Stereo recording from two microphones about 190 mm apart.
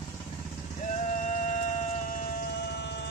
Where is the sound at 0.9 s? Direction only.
40° left (ahead or behind); by 3.1 s 65° left (ahead or behind).